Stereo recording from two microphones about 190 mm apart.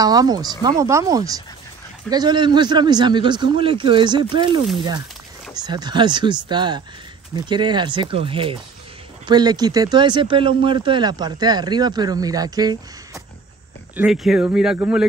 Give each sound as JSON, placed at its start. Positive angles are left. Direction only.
{"t": 0.0, "sound": "speech", "side_deg": -20}
{"t": 13.9, "sound": "speech", "side_deg": -5}